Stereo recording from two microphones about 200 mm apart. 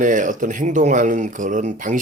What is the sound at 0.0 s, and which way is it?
Speech, 40° right (ahead or behind).